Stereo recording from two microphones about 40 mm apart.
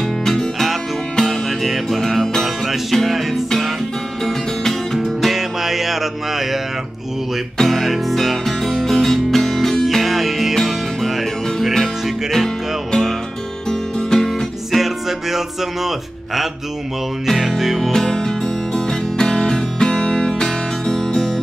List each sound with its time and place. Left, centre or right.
0.0 s music: centre
5.2 s music: centre
13.7 s music: centre
14.7 s music: centre
17.3 s music: centre
17.9 s music: centre